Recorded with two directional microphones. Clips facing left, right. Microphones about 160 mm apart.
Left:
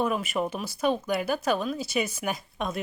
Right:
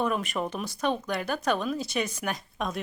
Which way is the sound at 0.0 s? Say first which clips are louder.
Left 1 dB; 5° left (ahead or behind).